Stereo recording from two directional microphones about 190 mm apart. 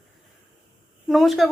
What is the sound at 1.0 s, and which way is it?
Speech, centre (ahead or behind).